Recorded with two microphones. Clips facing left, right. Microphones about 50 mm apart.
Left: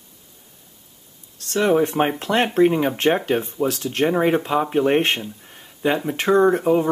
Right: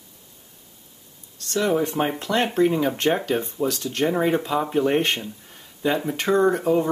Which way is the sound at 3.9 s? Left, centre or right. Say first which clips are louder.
Left 3 dB; left.